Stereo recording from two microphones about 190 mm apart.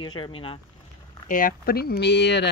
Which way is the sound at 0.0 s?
25° left (ahead or behind).